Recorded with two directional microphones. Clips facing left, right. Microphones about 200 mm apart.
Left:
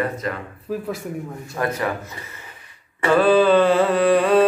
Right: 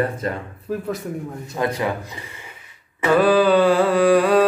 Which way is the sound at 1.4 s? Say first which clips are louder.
Right 1 dB; 15° right (ahead or behind).